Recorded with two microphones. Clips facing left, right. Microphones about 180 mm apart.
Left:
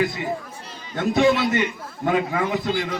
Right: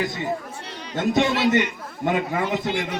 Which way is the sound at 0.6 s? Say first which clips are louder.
Right 3 dB; 75° right (ahead or behind).